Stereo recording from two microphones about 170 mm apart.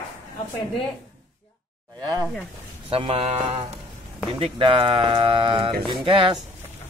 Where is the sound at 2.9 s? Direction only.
35° right (ahead or behind).